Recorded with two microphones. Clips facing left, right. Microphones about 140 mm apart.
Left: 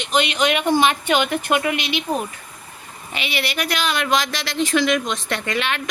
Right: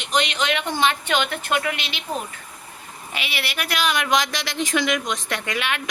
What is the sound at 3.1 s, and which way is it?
Speech, 5° right (ahead or behind).